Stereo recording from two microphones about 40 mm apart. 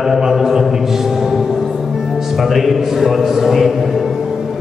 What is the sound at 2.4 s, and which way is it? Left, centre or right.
A man's voice, centre.